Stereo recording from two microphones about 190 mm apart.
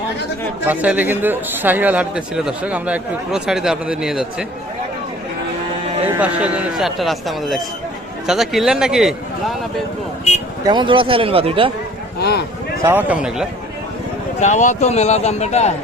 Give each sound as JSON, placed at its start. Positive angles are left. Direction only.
{"t": 0.7, "sound": "speech", "side_deg": -10}
{"t": 6.1, "sound": "speech", "side_deg": -5}
{"t": 10.6, "sound": "speech", "side_deg": -25}
{"t": 12.2, "sound": "speech", "side_deg": 60}
{"t": 12.8, "sound": "speech", "side_deg": -10}
{"t": 14.4, "sound": "speech", "side_deg": 40}